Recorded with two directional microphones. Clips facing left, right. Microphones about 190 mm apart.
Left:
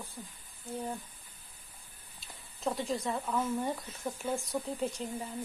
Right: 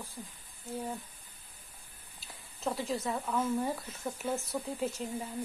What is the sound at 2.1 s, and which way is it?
Speech, centre (ahead or behind).